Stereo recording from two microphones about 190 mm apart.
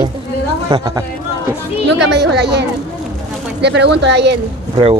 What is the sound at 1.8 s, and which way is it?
Speech, 60° right (ahead or behind).